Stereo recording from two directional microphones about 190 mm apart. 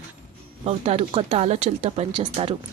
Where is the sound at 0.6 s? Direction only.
35° right (ahead or behind).